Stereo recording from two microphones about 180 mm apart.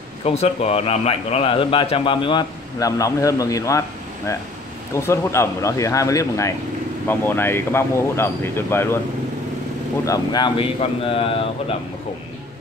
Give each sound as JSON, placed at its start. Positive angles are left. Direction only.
{"t": 0.2, "sound": "a man's voice", "side_deg": 35}
{"t": 4.9, "sound": "speech", "side_deg": 15}
{"t": 10.0, "sound": "speech", "side_deg": 20}